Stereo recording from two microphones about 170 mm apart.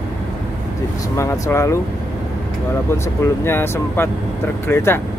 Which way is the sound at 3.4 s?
15° left (ahead or behind).